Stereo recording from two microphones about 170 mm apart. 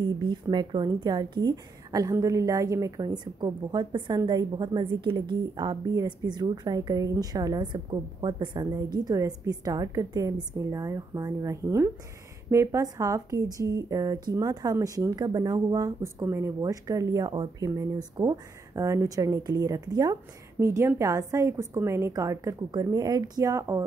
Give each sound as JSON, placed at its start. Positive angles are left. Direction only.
{"t": 0.2, "sound": "a woman's voice", "side_deg": -25}